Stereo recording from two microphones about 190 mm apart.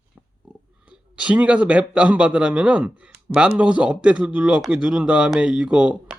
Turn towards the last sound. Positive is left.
turn(degrees=-5)  # may be behind; listen again after turning